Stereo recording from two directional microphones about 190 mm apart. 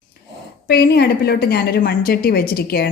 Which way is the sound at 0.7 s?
55° left (ahead or behind).